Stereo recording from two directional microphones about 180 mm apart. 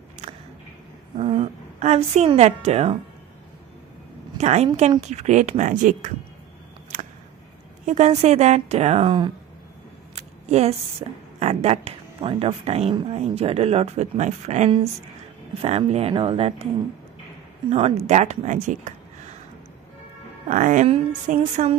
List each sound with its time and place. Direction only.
0.2 s a sound: 40° right (ahead or behind)
1.1 s a woman's voice: 30° right (ahead or behind)
4.4 s a woman's voice: 35° right (ahead or behind)
7.8 s a woman's voice: 40° right (ahead or behind)
17.6 s a woman's voice: 35° right (ahead or behind)
20.4 s a woman's voice: 45° right (ahead or behind)